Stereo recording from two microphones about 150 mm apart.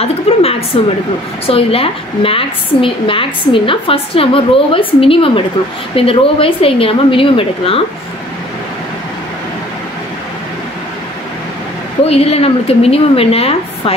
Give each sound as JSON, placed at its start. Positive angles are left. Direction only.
{"t": 0.0, "sound": "a woman's voice", "side_deg": 40}
{"t": 12.1, "sound": "a woman's voice", "side_deg": 40}